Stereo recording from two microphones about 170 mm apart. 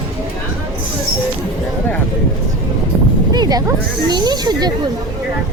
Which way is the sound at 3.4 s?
25° right (ahead or behind).